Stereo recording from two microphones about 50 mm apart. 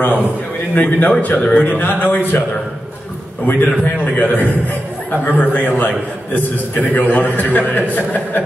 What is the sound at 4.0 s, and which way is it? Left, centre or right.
A man's voice, left.